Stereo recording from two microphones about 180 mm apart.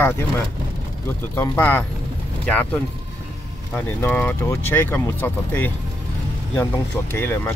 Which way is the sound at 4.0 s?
10° left (ahead or behind).